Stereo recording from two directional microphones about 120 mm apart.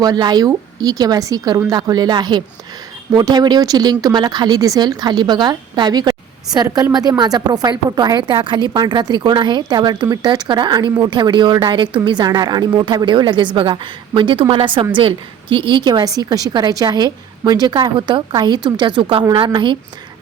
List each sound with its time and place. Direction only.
0.0 s a woman's voice: 35° right (ahead or behind)